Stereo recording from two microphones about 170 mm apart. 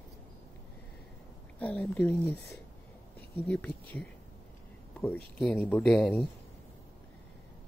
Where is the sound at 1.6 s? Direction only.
10° left (ahead or behind).